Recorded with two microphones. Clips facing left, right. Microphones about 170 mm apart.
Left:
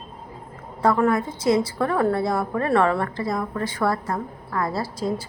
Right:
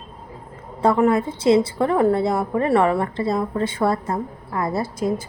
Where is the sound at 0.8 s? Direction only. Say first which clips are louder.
Right 3 dB; 25° right (ahead or behind).